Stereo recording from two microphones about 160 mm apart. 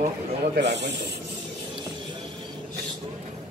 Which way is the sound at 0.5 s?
90° right.